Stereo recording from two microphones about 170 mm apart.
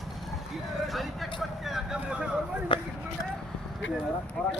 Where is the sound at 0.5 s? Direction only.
Centre (ahead or behind).